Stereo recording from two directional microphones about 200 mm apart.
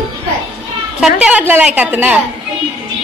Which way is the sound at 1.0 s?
5° right (ahead or behind).